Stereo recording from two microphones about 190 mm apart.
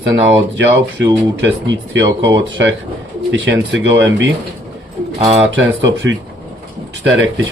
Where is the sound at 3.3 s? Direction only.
75° right (ahead or behind).